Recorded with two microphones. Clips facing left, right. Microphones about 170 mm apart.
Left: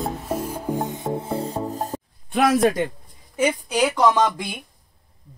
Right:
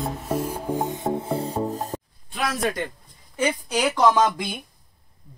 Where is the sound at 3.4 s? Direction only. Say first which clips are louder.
Left 3 dB; 5° left (ahead or behind).